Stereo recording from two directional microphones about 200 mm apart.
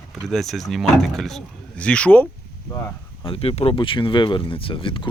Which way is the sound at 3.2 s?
30° left (ahead or behind).